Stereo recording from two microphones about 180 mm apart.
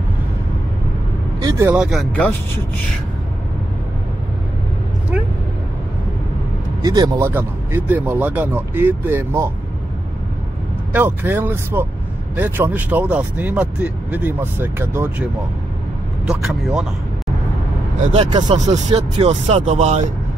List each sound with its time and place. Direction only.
1.4 s vehicle: 20° right (ahead or behind)
1.8 s speech: centre (ahead or behind)
6.8 s speech: 20° right (ahead or behind)
10.9 s speech: 10° right (ahead or behind)
16.3 s speech: centre (ahead or behind)
18.0 s speech: 35° right (ahead or behind)